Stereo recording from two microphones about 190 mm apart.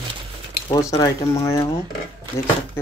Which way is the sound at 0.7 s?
20° left (ahead or behind).